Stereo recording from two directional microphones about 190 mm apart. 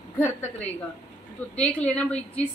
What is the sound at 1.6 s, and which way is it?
Speech, 5° left (ahead or behind).